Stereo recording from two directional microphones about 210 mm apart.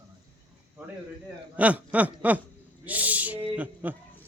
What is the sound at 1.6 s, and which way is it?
Snicker, 5° right (ahead or behind).